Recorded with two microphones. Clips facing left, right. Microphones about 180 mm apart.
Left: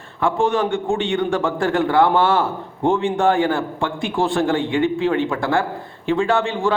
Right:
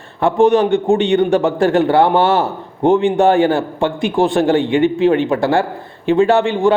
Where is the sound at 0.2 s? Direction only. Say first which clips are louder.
Right 7 dB; 20° right (ahead or behind).